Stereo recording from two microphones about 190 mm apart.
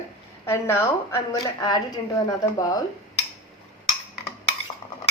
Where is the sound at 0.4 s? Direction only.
10° left (ahead or behind).